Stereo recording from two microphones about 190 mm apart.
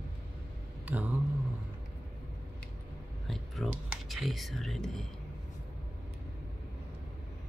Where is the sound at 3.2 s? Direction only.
Centre (ahead or behind).